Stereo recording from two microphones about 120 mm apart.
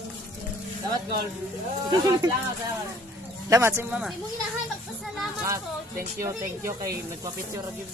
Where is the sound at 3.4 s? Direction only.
20° right (ahead or behind).